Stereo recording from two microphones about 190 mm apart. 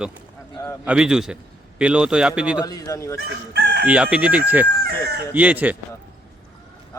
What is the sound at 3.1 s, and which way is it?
Chicken, 60° right (ahead or behind).